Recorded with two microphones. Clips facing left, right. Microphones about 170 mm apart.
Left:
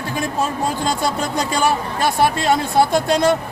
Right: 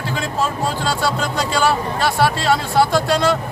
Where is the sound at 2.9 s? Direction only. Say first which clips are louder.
Left 1 dB; 20° left (ahead or behind).